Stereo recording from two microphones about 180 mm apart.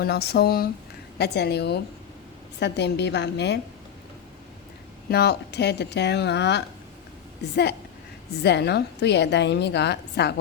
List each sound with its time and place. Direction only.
0.0 s a woman's voice: 65° left (ahead or behind)
5.0 s a woman's voice: 65° left (ahead or behind)